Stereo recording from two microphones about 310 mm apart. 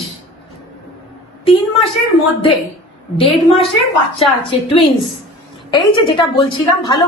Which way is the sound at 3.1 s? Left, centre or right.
Centre.